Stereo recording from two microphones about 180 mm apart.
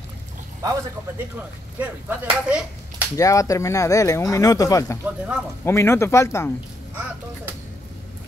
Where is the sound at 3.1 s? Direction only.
20° left (ahead or behind).